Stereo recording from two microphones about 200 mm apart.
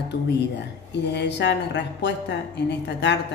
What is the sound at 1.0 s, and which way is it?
A woman's voice, 60° left (ahead or behind).